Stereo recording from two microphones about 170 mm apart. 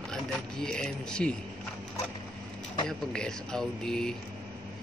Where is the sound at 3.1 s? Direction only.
5° left (ahead or behind).